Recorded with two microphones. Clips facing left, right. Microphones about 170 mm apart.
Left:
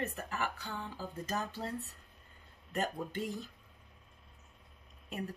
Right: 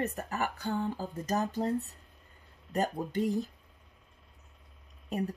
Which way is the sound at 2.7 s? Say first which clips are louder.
Right 5 dB; 40° right (ahead or behind).